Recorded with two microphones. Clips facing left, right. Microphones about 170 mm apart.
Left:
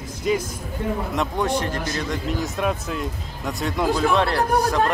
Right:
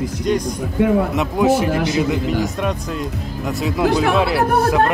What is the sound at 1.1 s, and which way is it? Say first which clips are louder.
A man's voice: right 7 dB; 5° right (ahead or behind).